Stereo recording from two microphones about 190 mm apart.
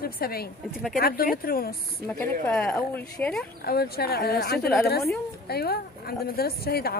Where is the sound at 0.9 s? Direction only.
50° left (ahead or behind).